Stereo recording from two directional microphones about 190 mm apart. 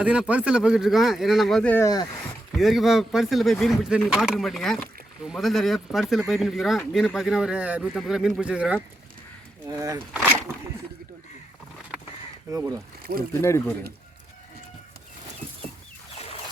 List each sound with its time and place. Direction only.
0.0 s speech: 5° right (ahead or behind); by 2.0 s 20° left (ahead or behind)
2.5 s speech: centre (ahead or behind)
9.6 s speech: 15° right (ahead or behind)
12.5 s speech: 15° right (ahead or behind)
13.1 s speech: 55° right (ahead or behind)
13.4 s speech: 15° left (ahead or behind)